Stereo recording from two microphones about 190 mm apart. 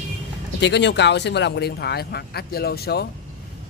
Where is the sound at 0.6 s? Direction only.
65° left (ahead or behind).